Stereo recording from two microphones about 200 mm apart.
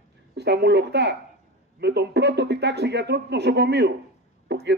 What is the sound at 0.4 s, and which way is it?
A man's voice, 55° right (ahead or behind).